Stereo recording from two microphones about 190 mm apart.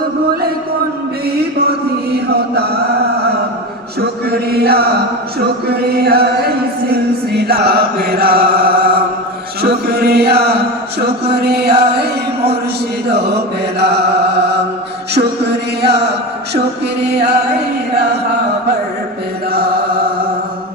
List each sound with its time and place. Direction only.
4.0 s chant: 55° right (ahead or behind)
5.4 s a sound: 55° right (ahead or behind)
9.6 s chant: 55° right (ahead or behind)
11.0 s music: 60° right (ahead or behind)
13.1 s mantra: 60° right (ahead or behind)
15.1 s music: 60° right (ahead or behind)
19.5 s mantra: 55° right (ahead or behind)